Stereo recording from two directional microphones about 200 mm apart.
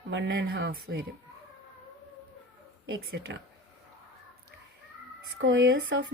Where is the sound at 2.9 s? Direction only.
65° right (ahead or behind).